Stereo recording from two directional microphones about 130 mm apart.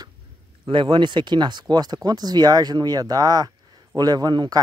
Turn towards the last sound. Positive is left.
turn(degrees=-35)  # may be behind; listen again after turning